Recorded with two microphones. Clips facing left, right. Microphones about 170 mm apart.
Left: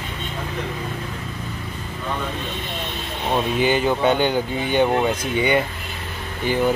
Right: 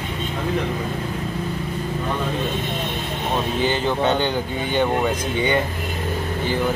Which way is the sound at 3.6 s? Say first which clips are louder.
Left 2 dB; 10° left (ahead or behind).